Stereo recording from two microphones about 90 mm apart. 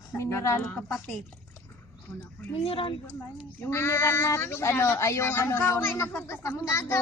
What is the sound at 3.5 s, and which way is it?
A woman's voice, 25° left (ahead or behind).